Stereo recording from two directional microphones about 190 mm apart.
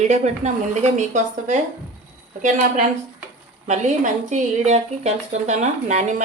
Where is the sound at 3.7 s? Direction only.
40° right (ahead or behind).